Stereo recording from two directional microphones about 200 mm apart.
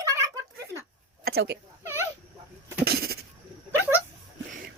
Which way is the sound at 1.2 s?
50° right (ahead or behind).